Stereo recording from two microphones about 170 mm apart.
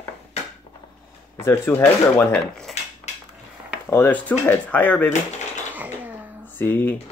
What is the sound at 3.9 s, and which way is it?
Speech, 10° left (ahead or behind).